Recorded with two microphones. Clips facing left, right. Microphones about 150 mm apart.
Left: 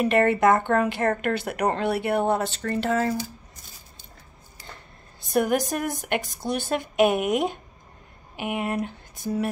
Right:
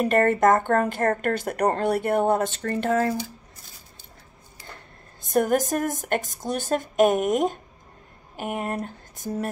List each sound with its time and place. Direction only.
0.0 s speech: 45° right (ahead or behind)
5.3 s speech: 40° right (ahead or behind)
8.4 s speech: 40° right (ahead or behind)